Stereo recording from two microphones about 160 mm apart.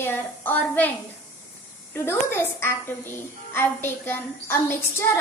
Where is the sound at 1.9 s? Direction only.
15° left (ahead or behind).